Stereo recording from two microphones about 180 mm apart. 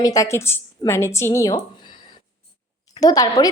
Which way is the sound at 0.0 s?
20° left (ahead or behind).